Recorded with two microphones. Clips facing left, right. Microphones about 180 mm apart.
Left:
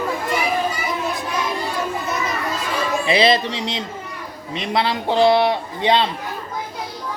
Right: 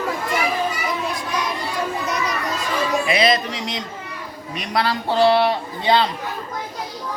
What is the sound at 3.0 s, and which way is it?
A man's voice, 30° left (ahead or behind).